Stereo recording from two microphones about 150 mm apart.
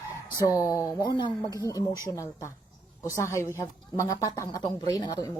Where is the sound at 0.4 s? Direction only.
25° left (ahead or behind).